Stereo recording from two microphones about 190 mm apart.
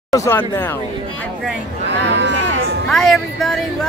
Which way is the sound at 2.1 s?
65° right (ahead or behind).